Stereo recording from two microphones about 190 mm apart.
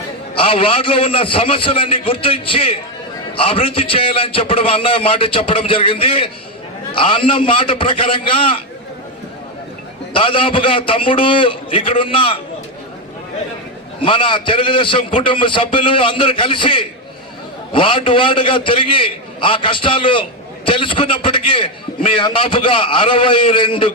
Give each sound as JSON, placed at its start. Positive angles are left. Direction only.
{"t": 0.3, "sound": "a man's voice", "side_deg": 30}
{"t": 10.1, "sound": "a man's voice", "side_deg": 25}
{"t": 14.0, "sound": "a man's voice", "side_deg": 25}